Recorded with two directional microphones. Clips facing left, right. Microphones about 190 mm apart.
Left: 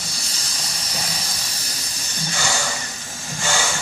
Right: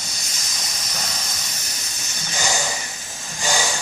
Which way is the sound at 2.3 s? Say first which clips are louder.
Right 1 dB; 20° right (ahead or behind).